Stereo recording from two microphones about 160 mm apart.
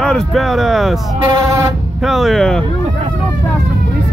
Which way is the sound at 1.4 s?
20° right (ahead or behind).